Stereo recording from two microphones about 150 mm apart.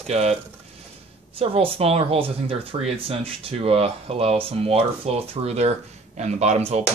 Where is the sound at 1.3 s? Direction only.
40° right (ahead or behind).